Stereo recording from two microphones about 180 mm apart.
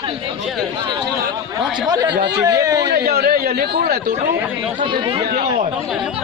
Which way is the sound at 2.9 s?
60° right (ahead or behind).